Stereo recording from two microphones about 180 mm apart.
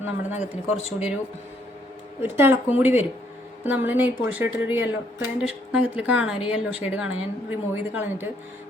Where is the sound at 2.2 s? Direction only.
10° right (ahead or behind).